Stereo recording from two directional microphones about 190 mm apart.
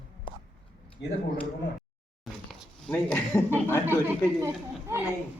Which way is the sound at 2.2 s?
Centre (ahead or behind).